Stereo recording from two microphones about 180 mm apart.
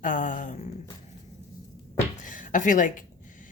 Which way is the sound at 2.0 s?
45° left (ahead or behind).